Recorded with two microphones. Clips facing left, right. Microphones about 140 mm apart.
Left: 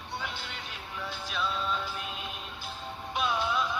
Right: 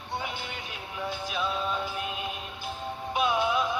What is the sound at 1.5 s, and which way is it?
Music, 10° right (ahead or behind).